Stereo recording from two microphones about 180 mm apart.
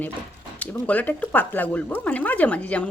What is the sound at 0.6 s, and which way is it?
A woman's voice, 10° left (ahead or behind).